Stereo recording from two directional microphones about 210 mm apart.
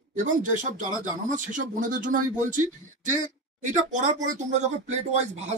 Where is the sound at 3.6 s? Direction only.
35° right (ahead or behind).